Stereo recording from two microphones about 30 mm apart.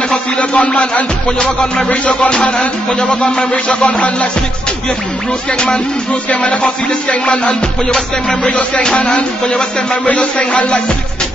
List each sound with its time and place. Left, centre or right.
0.4 s a man's voice: left
1.4 s music: left
1.9 s music: left
5.5 s music: left
6.3 s music: left
9.5 s music: left
10.3 s music: left